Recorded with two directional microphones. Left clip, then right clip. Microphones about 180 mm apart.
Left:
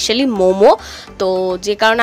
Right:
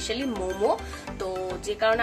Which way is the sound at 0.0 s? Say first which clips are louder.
Left 16 dB; 50° left (ahead or behind).